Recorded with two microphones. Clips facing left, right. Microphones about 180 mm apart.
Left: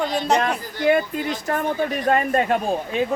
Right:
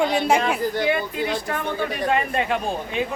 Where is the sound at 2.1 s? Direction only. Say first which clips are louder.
Left 4 dB; 45° left (ahead or behind).